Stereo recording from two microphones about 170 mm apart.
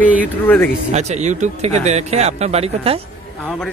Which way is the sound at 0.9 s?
40° right (ahead or behind).